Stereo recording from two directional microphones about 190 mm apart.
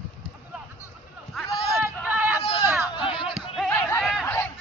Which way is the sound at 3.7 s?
15° left (ahead or behind).